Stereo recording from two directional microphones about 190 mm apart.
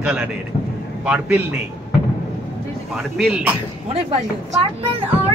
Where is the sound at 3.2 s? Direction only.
5° right (ahead or behind).